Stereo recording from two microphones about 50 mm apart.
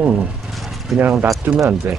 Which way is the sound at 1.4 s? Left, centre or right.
Right.